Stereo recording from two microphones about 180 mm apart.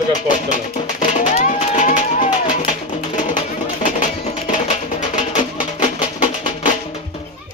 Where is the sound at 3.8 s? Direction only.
40° left (ahead or behind).